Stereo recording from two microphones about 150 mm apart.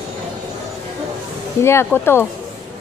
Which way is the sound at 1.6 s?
15° left (ahead or behind).